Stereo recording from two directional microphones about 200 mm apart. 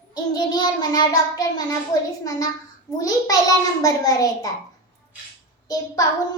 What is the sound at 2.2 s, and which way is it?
A child's voice, 20° left (ahead or behind).